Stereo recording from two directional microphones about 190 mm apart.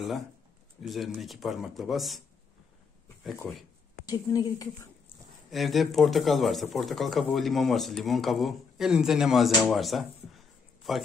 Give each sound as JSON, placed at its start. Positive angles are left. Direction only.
{"t": 0.8, "sound": "speech", "side_deg": 0}
{"t": 4.0, "sound": "a woman's voice", "side_deg": 20}
{"t": 5.5, "sound": "speech", "side_deg": 0}
{"t": 9.7, "sound": "a sound", "side_deg": 0}